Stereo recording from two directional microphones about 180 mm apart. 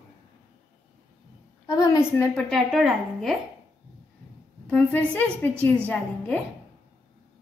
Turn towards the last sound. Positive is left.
turn(degrees=10)  # may be behind; listen again after turning